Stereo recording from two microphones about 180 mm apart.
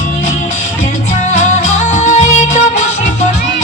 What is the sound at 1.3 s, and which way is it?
Music, 40° left (ahead or behind).